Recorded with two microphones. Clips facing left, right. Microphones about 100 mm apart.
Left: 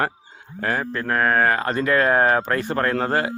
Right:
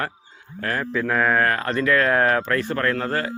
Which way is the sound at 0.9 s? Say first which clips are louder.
Right 1 dB; centre (ahead or behind).